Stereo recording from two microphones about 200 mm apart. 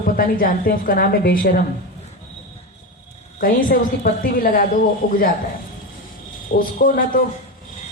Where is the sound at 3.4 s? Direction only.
45° left (ahead or behind).